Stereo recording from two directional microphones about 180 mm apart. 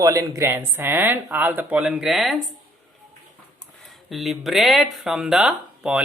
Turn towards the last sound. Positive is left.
turn(degrees=-5)  # may be behind; listen again after turning